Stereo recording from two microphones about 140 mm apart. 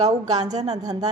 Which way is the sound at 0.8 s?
25° right (ahead or behind).